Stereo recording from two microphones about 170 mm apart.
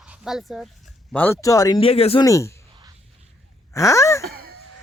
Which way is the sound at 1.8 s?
35° left (ahead or behind).